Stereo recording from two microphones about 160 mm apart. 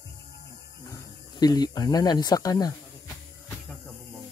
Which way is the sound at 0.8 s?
20° left (ahead or behind).